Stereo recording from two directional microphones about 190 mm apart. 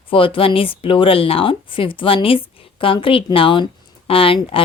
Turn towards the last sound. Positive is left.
turn(degrees=30)  # may be behind; listen again after turning